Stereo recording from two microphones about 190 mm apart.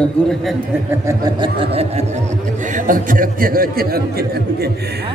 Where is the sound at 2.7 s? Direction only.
45° right (ahead or behind).